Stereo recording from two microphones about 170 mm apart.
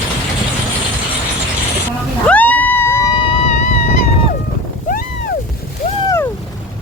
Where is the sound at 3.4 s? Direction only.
45° left (ahead or behind).